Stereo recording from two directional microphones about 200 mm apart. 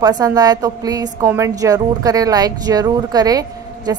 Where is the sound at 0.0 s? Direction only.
20° right (ahead or behind).